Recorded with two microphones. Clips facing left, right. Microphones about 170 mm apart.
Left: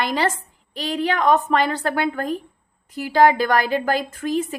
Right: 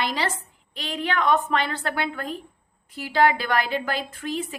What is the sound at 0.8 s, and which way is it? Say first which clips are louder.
A woman's voice: left 4 dB; 40° left (ahead or behind).